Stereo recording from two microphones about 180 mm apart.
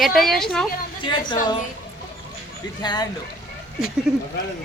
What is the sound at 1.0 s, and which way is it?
Speech, 25° left (ahead or behind).